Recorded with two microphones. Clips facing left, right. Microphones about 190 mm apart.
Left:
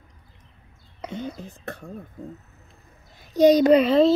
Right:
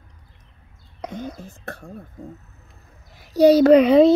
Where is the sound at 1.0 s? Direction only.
10° right (ahead or behind).